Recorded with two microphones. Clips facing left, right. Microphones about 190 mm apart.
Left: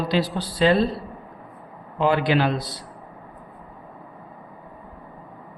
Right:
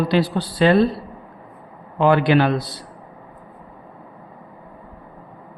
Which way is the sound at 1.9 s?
60° right (ahead or behind).